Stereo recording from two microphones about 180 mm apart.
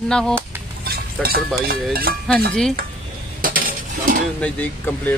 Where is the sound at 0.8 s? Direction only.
55° right (ahead or behind).